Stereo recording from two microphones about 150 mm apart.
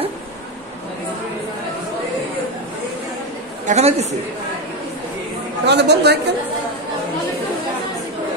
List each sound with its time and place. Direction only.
3.6 s a woman's voice: 45° right (ahead or behind)
5.7 s a woman's voice: 90° right